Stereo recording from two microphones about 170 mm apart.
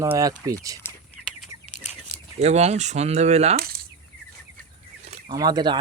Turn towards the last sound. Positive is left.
turn(degrees=-25)  # may be behind; listen again after turning